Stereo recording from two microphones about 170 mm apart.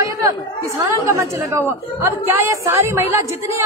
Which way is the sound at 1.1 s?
15° right (ahead or behind).